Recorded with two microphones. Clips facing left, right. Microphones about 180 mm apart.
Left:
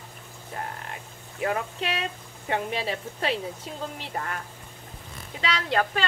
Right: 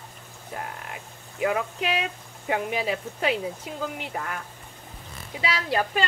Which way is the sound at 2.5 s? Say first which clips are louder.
Right 2 dB; 30° left (ahead or behind).